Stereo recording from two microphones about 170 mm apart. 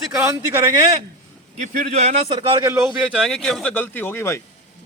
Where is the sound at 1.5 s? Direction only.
45° right (ahead or behind); by 2.9 s 15° right (ahead or behind).